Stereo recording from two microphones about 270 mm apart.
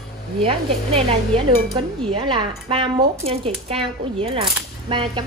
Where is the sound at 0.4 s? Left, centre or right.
Right.